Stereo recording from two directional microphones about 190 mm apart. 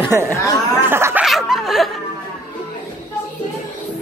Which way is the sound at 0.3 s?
15° left (ahead or behind).